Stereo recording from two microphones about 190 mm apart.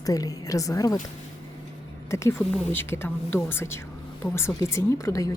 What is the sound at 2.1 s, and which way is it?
Speech, 15° left (ahead or behind).